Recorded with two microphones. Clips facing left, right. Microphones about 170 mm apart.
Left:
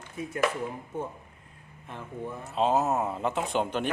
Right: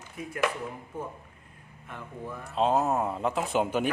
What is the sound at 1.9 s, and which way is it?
Speech, 25° left (ahead or behind).